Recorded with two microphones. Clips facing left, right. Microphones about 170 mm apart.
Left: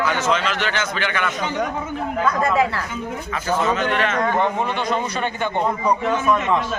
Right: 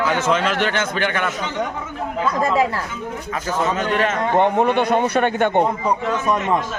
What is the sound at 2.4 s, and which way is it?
A man's voice, 35° right (ahead or behind).